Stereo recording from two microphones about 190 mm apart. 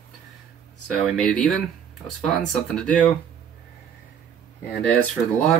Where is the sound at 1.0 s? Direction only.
5° left (ahead or behind).